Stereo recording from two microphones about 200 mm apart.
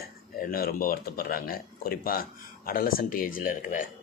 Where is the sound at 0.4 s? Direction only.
45° left (ahead or behind).